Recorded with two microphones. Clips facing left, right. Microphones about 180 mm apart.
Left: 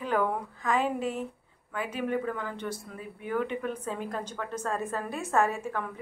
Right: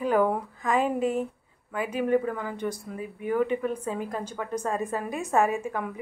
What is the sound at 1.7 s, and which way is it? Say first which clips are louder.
A woman's voice: right 6 dB; 10° right (ahead or behind).